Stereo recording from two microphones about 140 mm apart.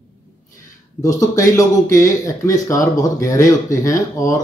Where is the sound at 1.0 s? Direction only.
25° left (ahead or behind).